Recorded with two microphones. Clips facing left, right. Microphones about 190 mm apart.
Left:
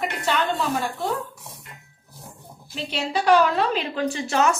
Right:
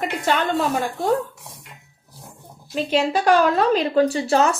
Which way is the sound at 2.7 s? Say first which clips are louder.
Right 7 dB; 45° right (ahead or behind).